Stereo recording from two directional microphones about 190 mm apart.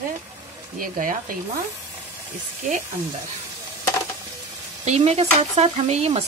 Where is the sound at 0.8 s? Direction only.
45° right (ahead or behind).